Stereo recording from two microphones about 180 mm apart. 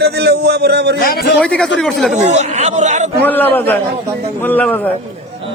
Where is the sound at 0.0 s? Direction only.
65° right (ahead or behind).